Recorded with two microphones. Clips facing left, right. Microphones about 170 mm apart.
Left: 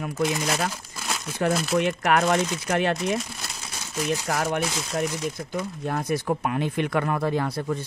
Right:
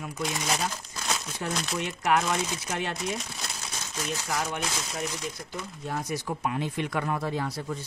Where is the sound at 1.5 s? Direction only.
5° left (ahead or behind).